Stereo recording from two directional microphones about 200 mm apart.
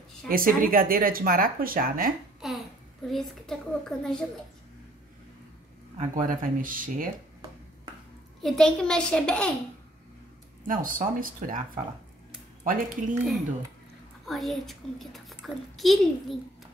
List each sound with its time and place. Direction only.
0.3 s speech: 45° right (ahead or behind)
2.4 s a woman's voice: centre (ahead or behind)
5.9 s speech: 40° right (ahead or behind)
8.4 s a woman's voice: centre (ahead or behind)
10.7 s speech: 40° right (ahead or behind)
14.2 s a woman's voice: centre (ahead or behind)